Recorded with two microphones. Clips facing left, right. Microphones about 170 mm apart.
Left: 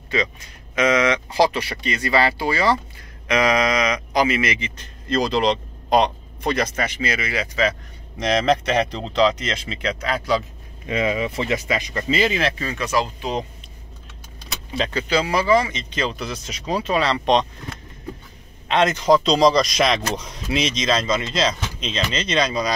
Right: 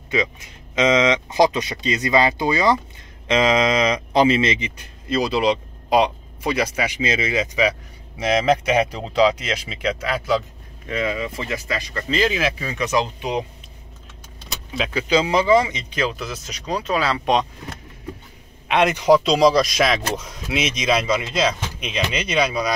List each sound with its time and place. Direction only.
0.1 s speech: 20° right (ahead or behind)
5.0 s speech: 5° right (ahead or behind)
7.1 s speech: 25° right (ahead or behind)
8.2 s speech: 5° right (ahead or behind)
10.9 s speech: 20° left (ahead or behind)
12.1 s speech: centre (ahead or behind); by 13.4 s 20° right (ahead or behind)
14.8 s speech: 10° right (ahead or behind)
18.7 s speech: 10° right (ahead or behind)